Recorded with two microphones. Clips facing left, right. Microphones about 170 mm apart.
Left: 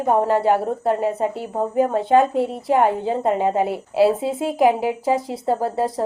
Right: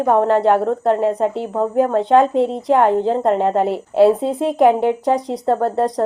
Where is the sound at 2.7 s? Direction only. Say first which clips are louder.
Right 3 dB; 70° right (ahead or behind).